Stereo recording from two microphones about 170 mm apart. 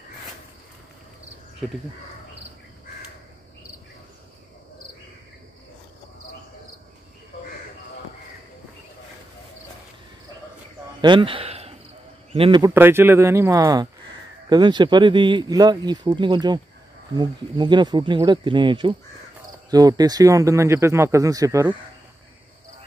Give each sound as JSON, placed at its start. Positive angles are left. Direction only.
{"t": 11.0, "sound": "a sound", "side_deg": -30}
{"t": 12.3, "sound": "a man's voice", "side_deg": -30}
{"t": 12.7, "sound": "speech", "side_deg": -15}